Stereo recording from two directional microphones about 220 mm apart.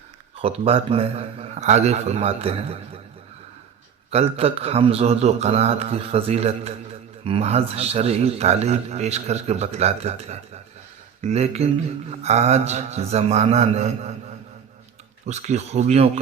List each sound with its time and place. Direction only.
0.4 s a man's voice: 25° right (ahead or behind)
4.1 s a man's voice: 30° right (ahead or behind)